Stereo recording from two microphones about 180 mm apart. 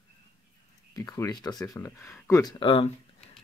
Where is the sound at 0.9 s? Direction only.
20° left (ahead or behind).